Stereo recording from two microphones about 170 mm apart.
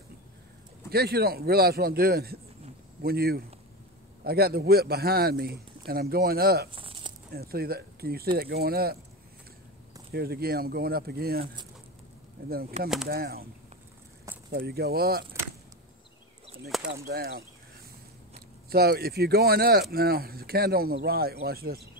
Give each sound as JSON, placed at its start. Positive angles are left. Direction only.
{"t": 0.8, "sound": "speech", "side_deg": -65}
{"t": 6.7, "sound": "a sound", "side_deg": -30}
{"t": 7.3, "sound": "speech", "side_deg": -65}
{"t": 10.1, "sound": "speech", "side_deg": -65}
{"t": 12.7, "sound": "speech", "side_deg": -40}
{"t": 13.1, "sound": "speech", "side_deg": -65}
{"t": 14.5, "sound": "speech", "side_deg": -65}
{"t": 16.6, "sound": "a sound", "side_deg": 0}
{"t": 17.1, "sound": "speech", "side_deg": -65}